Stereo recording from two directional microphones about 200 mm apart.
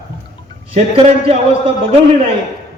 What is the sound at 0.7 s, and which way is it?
A man's voice, 30° right (ahead or behind).